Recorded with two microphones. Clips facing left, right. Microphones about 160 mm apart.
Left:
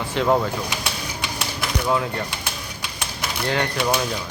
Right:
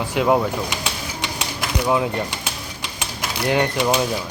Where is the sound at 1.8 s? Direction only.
15° right (ahead or behind).